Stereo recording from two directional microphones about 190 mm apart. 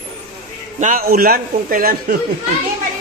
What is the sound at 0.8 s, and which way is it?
A man's voice, 45° right (ahead or behind).